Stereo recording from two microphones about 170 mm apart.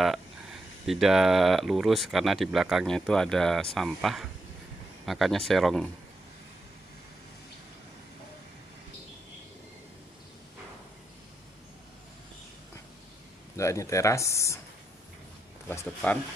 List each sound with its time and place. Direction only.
0.0 s speech: centre (ahead or behind)
13.6 s speech: 15° left (ahead or behind)